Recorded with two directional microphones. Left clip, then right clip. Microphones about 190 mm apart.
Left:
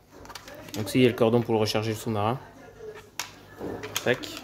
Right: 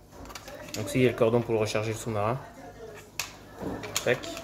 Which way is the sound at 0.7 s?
55° left (ahead or behind).